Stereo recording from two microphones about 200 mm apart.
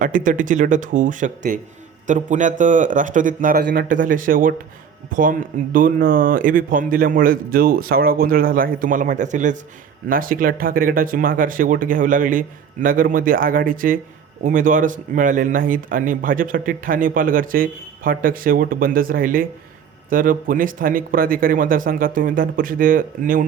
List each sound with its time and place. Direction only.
0.0 s speech: 40° right (ahead or behind)